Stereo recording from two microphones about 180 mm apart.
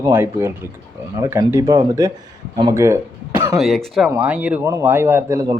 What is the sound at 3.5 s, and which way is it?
A man's voice, centre (ahead or behind).